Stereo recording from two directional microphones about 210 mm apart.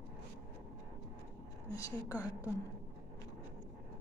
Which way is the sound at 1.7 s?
15° left (ahead or behind).